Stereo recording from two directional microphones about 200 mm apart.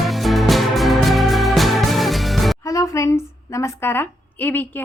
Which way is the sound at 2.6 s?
15° left (ahead or behind).